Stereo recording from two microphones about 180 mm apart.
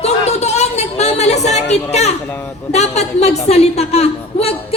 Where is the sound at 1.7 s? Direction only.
40° left (ahead or behind).